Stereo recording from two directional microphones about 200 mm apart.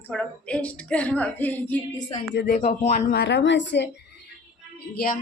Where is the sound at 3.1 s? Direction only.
55° left (ahead or behind).